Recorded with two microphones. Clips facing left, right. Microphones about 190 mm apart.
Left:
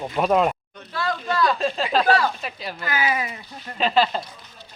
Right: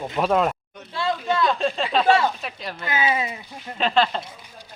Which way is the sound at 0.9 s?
25° right (ahead or behind).